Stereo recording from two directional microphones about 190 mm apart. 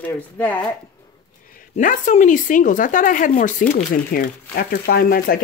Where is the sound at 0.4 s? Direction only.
10° left (ahead or behind).